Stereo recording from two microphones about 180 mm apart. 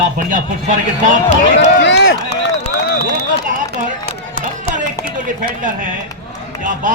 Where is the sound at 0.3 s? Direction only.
45° right (ahead or behind).